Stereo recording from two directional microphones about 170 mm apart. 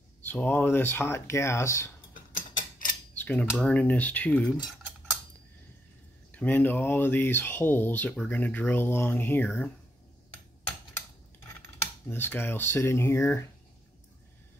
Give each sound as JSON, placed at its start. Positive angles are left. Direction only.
{"t": 0.3, "sound": "speech", "side_deg": 10}
{"t": 2.5, "sound": "a sound", "side_deg": 55}
{"t": 3.2, "sound": "cutlery", "side_deg": 10}
{"t": 6.3, "sound": "speech", "side_deg": 10}
{"t": 11.6, "sound": "cutlery", "side_deg": 15}